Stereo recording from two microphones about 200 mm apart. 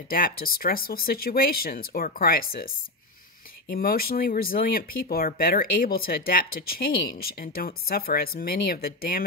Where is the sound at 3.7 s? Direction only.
50° left (ahead or behind).